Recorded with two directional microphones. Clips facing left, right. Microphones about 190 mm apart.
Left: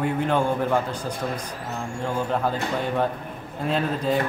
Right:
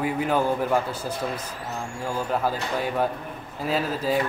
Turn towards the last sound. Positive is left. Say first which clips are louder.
# left 1 dB
turn(degrees=-5)  # may be behind; listen again after turning